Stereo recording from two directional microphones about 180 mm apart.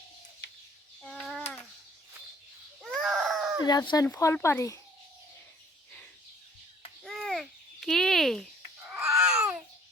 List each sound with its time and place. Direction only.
1.0 s a sound: 5° left (ahead or behind)
3.0 s baby cry: centre (ahead or behind)
3.6 s speech: 20° left (ahead or behind)
7.0 s babbling: centre (ahead or behind)
8.9 s babbling: 15° right (ahead or behind)